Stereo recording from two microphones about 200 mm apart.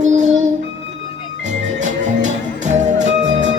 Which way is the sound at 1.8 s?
35° right (ahead or behind).